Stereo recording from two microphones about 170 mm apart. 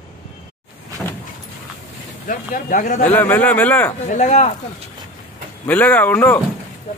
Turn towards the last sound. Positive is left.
turn(degrees=10)  # may be behind; listen again after turning